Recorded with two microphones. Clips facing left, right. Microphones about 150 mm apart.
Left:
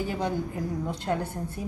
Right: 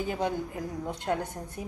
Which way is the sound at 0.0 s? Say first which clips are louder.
Even; 20° right (ahead or behind).